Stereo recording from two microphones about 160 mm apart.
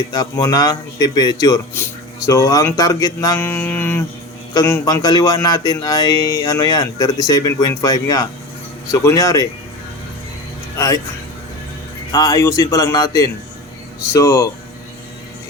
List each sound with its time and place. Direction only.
0.1 s a man's voice: 25° left (ahead or behind)
10.8 s speech: 25° left (ahead or behind)
12.1 s a man's voice: 20° left (ahead or behind)